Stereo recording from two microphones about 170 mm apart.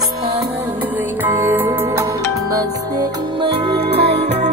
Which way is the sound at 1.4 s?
15° right (ahead or behind).